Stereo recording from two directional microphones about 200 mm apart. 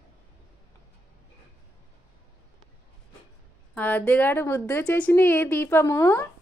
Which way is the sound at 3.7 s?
10° left (ahead or behind).